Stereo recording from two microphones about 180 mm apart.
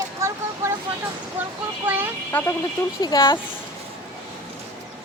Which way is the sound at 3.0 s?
25° left (ahead or behind).